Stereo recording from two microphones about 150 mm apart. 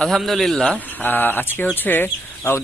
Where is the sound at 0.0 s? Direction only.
Centre (ahead or behind).